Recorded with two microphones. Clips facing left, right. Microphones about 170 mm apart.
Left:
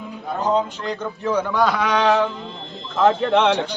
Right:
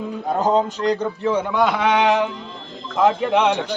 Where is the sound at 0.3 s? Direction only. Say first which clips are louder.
Right 2 dB; 45° right (ahead or behind).